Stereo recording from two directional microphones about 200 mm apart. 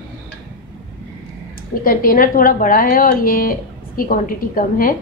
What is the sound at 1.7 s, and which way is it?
A woman's voice, 45° left (ahead or behind).